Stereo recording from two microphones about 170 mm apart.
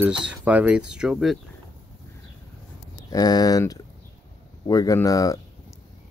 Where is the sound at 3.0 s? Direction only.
20° left (ahead or behind).